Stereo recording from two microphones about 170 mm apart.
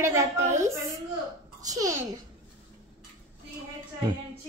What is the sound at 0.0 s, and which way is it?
A woman's voice, 15° right (ahead or behind).